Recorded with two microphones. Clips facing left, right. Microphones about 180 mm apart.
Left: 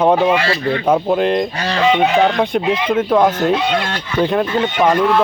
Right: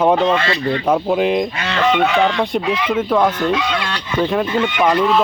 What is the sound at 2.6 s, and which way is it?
Speech, 20° left (ahead or behind).